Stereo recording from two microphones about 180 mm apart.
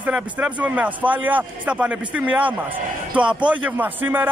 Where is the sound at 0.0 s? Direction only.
5° right (ahead or behind).